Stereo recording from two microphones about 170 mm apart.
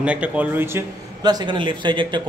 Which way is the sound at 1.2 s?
25° right (ahead or behind).